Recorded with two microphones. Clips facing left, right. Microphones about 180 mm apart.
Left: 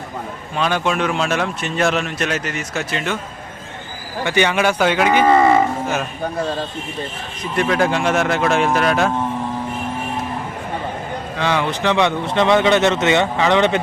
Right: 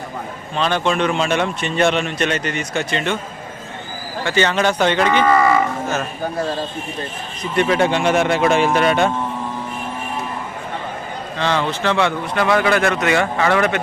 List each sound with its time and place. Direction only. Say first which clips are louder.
0.5 s speech: right 1 dB; 10° left (ahead or behind)
4.2 s speech: left 1 dB; 15° left (ahead or behind)
5.2 s cattle: left 4 dB; 25° left (ahead or behind)
7.5 s speech: right 1 dB; centre (ahead or behind)
11.3 s speech: even; 10° left (ahead or behind)